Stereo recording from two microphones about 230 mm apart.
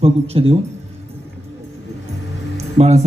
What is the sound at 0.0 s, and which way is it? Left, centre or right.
Speech, right.